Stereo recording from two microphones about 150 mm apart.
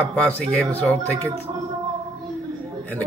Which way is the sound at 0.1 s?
10° left (ahead or behind).